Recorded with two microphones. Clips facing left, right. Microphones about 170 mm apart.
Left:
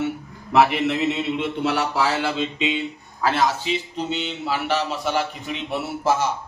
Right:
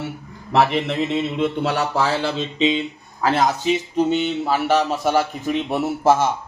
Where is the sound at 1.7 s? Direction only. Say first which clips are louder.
Right 2 dB; 35° right (ahead or behind).